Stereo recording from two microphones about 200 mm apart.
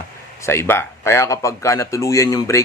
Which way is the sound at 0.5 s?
10° left (ahead or behind).